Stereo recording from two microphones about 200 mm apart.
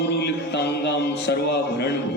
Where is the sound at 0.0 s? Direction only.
55° left (ahead or behind).